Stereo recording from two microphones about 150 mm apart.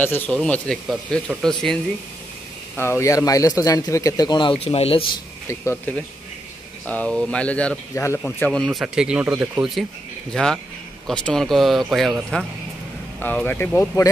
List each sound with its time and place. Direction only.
0.0 s speech: 10° left (ahead or behind)
2.7 s a man's voice: 15° left (ahead or behind); by 5.0 s 40° left (ahead or behind)
5.5 s speech: 20° left (ahead or behind)
7.9 s speech: 20° left (ahead or behind)
8.5 s speech: centre (ahead or behind)
13.2 s speech: 10° left (ahead or behind)